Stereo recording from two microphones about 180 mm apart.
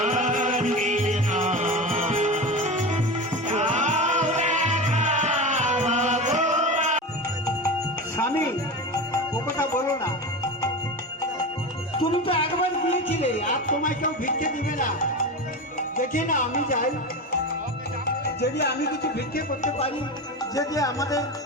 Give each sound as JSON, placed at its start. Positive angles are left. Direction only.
{"t": 0.0, "sound": "music", "side_deg": -45}
{"t": 9.1, "sound": "music", "side_deg": 15}
{"t": 11.9, "sound": "music", "side_deg": 30}
{"t": 16.0, "sound": "music", "side_deg": 45}
{"t": 18.0, "sound": "music", "side_deg": 65}
{"t": 20.6, "sound": "music", "side_deg": 20}